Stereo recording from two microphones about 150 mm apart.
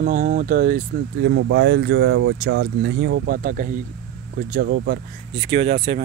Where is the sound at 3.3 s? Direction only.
65° right (ahead or behind).